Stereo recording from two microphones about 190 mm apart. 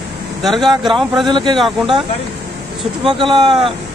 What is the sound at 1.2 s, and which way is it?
Speech, 25° right (ahead or behind).